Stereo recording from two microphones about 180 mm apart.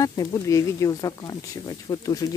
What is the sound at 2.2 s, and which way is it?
Speech, 15° left (ahead or behind).